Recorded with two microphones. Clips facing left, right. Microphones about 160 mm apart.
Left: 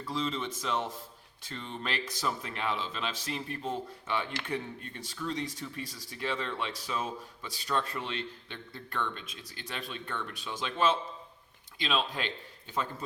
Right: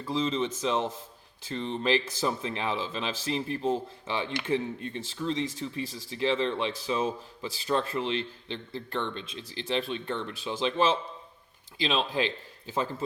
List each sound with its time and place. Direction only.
0.0 s speech: 25° right (ahead or behind)
11.8 s speech: 25° right (ahead or behind)